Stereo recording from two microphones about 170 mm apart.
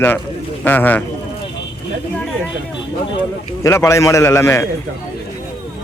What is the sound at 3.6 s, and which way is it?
Speech, 15° left (ahead or behind).